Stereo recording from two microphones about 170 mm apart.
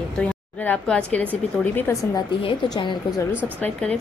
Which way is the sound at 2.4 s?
30° left (ahead or behind).